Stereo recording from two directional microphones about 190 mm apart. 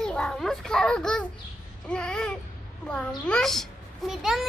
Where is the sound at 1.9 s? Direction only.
5° left (ahead or behind).